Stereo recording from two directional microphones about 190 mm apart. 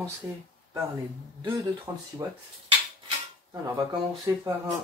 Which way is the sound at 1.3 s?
20° right (ahead or behind).